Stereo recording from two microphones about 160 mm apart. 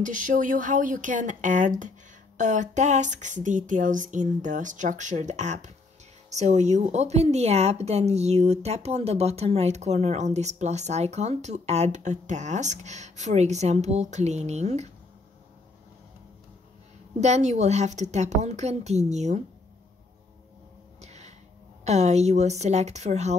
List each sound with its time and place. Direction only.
0.0 s a woman's voice: 55° right (ahead or behind)
17.2 s a woman's voice: 45° right (ahead or behind)
21.0 s a sound: 45° right (ahead or behind)
21.8 s a woman's voice: 45° right (ahead or behind)